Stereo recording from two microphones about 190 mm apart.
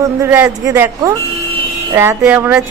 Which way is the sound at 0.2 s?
15° right (ahead or behind).